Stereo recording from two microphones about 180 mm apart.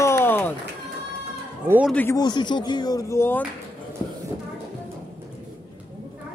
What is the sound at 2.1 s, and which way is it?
Speech, 25° left (ahead or behind).